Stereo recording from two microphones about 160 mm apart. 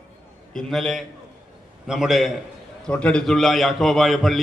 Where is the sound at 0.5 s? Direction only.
Centre (ahead or behind).